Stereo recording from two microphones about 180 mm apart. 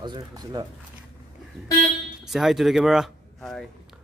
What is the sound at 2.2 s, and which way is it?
Speech, centre (ahead or behind).